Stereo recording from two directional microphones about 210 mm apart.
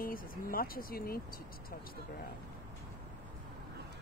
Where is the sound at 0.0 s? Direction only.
45° left (ahead or behind).